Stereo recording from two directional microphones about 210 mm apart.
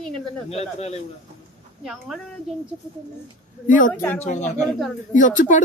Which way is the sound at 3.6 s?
40° left (ahead or behind).